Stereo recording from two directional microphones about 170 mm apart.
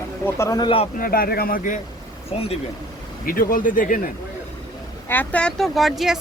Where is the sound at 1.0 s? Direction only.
60° left (ahead or behind).